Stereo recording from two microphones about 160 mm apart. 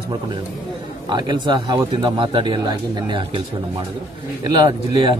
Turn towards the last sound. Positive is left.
turn(degrees=-30)  # may be behind; listen again after turning